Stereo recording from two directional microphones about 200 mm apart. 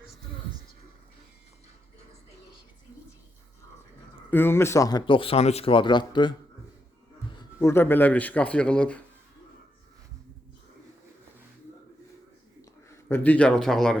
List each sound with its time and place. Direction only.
4.3 s a man's voice: 10° left (ahead or behind)
7.6 s speech: 10° left (ahead or behind)
13.1 s speech: 10° left (ahead or behind)